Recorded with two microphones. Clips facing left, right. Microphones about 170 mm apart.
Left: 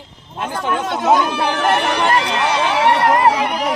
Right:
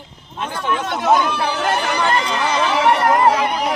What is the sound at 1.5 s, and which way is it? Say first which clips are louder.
Speech: left 3 dB; 70° left (ahead or behind).